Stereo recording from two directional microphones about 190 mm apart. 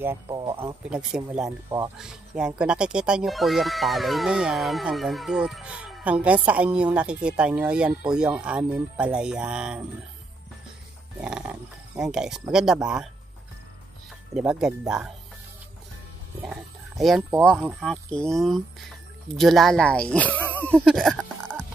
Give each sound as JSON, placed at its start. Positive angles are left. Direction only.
{"t": 0.3, "sound": "speech", "side_deg": -25}
{"t": 0.8, "sound": "speech", "side_deg": -5}
{"t": 11.1, "sound": "speech", "side_deg": -5}
{"t": 14.3, "sound": "speech", "side_deg": -5}
{"t": 16.4, "sound": "speech", "side_deg": 0}